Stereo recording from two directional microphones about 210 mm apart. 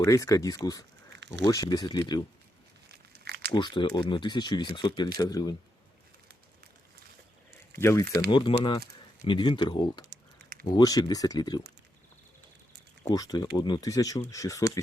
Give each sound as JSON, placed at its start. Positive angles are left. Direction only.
{"t": 0.0, "sound": "speech", "side_deg": 15}
{"t": 1.1, "sound": "a sound", "side_deg": -60}
{"t": 1.5, "sound": "speech", "side_deg": 15}
{"t": 3.2, "sound": "crumpling", "side_deg": -50}
{"t": 3.5, "sound": "speech", "side_deg": 20}
{"t": 7.8, "sound": "speech", "side_deg": 10}
{"t": 8.3, "sound": "speech", "side_deg": 20}
{"t": 13.1, "sound": "speech", "side_deg": 20}